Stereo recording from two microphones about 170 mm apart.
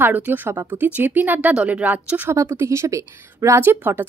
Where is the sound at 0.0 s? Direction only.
10° right (ahead or behind).